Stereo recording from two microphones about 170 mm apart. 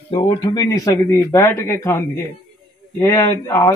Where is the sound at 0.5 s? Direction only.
20° left (ahead or behind).